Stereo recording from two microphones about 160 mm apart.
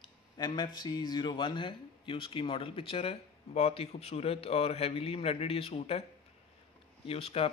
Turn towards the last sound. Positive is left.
turn(degrees=35)  # may be behind; listen again after turning